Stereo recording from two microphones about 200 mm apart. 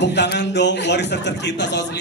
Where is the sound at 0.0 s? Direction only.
60° left (ahead or behind).